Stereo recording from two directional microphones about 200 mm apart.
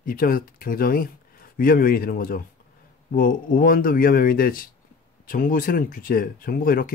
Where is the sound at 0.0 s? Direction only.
45° left (ahead or behind).